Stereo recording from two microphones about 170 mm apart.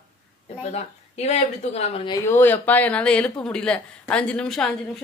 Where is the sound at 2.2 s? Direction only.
15° left (ahead or behind).